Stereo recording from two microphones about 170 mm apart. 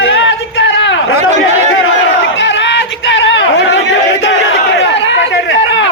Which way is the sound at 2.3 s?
90° left.